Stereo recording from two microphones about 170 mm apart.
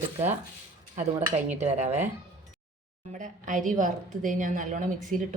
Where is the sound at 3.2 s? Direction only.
50° right (ahead or behind).